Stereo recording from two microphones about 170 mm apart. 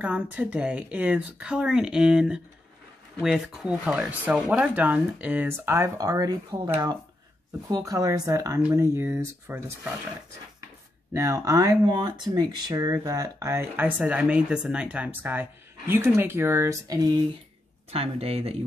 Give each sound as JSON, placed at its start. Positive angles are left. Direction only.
{"t": 0.0, "sound": "speech", "side_deg": -10}
{"t": 11.1, "sound": "speech", "side_deg": -20}
{"t": 17.9, "sound": "speech", "side_deg": -35}